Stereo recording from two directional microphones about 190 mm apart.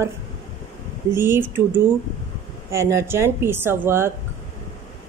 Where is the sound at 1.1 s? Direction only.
10° right (ahead or behind).